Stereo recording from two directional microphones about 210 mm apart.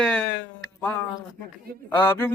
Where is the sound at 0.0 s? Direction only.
5° left (ahead or behind).